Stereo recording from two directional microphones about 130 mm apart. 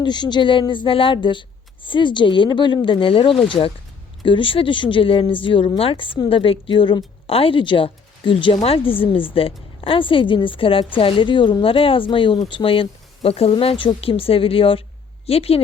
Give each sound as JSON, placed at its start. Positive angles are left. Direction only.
{"t": 0.0, "sound": "a woman's voice", "side_deg": 35}